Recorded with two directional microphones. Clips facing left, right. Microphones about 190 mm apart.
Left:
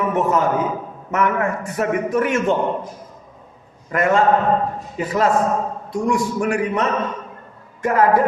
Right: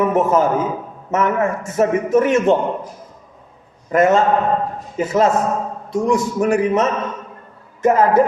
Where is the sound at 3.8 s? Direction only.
20° right (ahead or behind).